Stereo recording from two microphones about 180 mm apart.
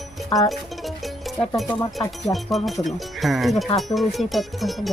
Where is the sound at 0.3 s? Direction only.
Centre (ahead or behind).